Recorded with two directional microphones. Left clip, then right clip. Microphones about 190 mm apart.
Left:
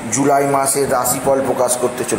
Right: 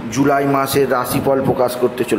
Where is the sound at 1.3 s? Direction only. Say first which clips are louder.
Left 1 dB; 25° right (ahead or behind).